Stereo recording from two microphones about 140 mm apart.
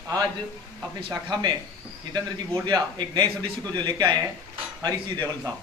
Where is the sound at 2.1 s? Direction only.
30° right (ahead or behind).